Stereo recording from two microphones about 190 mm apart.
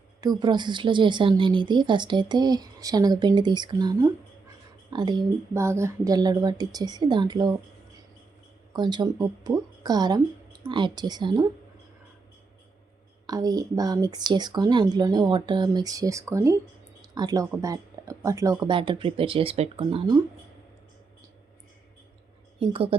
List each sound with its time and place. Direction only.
0.2 s a woman's voice: 20° right (ahead or behind)
8.7 s a woman's voice: 20° right (ahead or behind)
13.2 s a woman's voice: 20° right (ahead or behind)
22.6 s a woman's voice: 30° right (ahead or behind)